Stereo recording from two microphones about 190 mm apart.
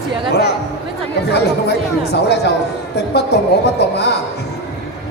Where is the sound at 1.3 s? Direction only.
60° left (ahead or behind).